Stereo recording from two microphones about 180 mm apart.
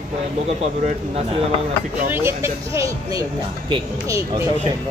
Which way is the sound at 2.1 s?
15° right (ahead or behind).